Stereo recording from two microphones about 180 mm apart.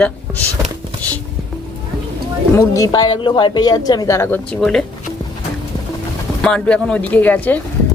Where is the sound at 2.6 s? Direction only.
20° left (ahead or behind).